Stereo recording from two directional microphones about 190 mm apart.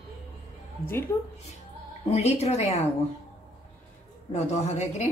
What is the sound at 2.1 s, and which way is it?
Speech, 35° left (ahead or behind).